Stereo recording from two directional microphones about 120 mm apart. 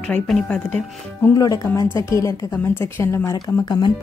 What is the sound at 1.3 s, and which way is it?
Speech, 30° left (ahead or behind).